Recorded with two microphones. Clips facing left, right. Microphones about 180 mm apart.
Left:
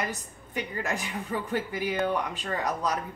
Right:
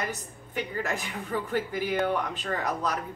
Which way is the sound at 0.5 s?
15° left (ahead or behind).